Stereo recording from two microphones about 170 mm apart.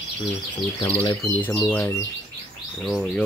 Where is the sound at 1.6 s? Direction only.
10° left (ahead or behind).